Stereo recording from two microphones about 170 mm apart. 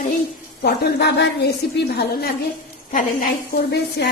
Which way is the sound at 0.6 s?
75° left (ahead or behind).